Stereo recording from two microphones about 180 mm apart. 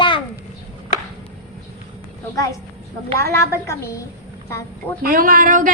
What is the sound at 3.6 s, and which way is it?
Speech, 15° left (ahead or behind).